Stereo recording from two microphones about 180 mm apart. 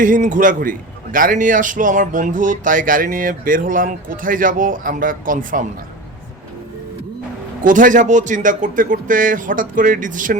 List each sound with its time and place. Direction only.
0.0 s a man's voice: 45° right (ahead or behind)
7.6 s a man's voice: 45° right (ahead or behind)